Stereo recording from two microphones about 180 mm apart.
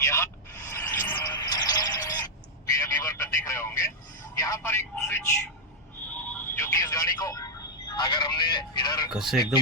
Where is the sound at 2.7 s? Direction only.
15° left (ahead or behind).